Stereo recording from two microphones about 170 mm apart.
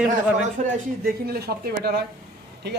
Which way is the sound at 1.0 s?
60° right (ahead or behind).